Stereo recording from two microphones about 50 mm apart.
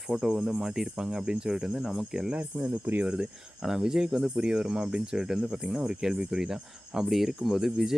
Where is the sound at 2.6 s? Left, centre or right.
Right.